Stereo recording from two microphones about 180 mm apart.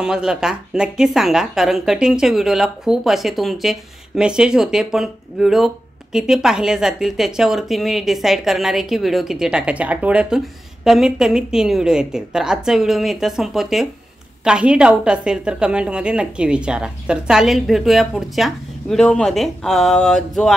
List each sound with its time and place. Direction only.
0.0 s speech: 5° right (ahead or behind)